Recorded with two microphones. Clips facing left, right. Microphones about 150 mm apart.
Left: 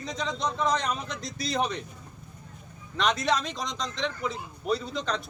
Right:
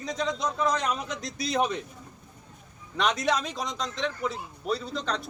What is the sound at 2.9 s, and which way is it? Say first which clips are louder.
A man's voice: even; 10° right (ahead or behind).